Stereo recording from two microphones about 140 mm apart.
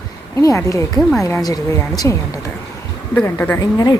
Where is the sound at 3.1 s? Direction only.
15° left (ahead or behind).